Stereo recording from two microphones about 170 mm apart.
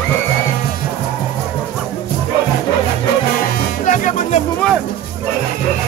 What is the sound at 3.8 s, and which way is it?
Music, 50° left (ahead or behind).